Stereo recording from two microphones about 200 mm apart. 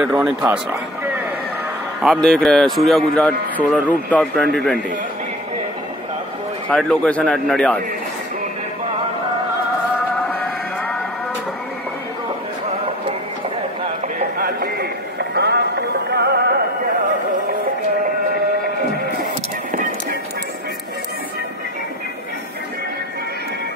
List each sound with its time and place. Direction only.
0.0 s speech: 5° right (ahead or behind)
2.2 s a man's voice: 5° left (ahead or behind)
6.7 s a man's voice: 5° left (ahead or behind)
14.0 s music: 50° right (ahead or behind)
19.7 s music: 40° right (ahead or behind)